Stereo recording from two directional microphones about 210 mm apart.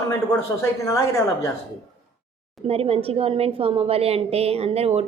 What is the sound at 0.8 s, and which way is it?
Speech, 15° left (ahead or behind).